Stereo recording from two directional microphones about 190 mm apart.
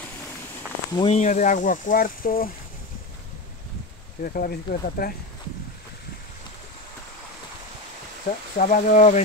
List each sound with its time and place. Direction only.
0.9 s speech: 30° left (ahead or behind); by 2.5 s 50° left (ahead or behind)
4.2 s speech: 50° left (ahead or behind)
8.5 s speech: 45° left (ahead or behind)